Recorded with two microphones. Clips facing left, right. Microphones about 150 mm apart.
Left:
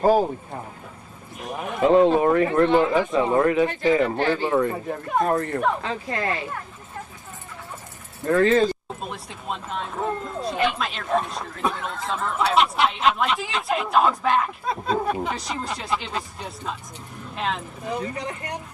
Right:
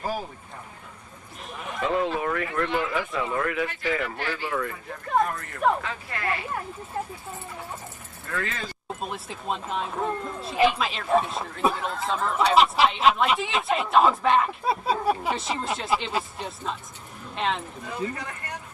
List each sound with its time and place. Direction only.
1.5 s speech: 45° left (ahead or behind)
1.9 s speech: 30° left (ahead or behind)
5.8 s speech: 30° left (ahead or behind)
8.3 s speech: 35° left (ahead or behind)
9.0 s speech: centre (ahead or behind)
17.8 s speech: 15° left (ahead or behind)